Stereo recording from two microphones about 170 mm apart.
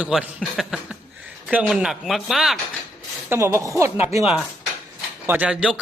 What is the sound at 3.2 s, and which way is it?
Speech, 15° right (ahead or behind).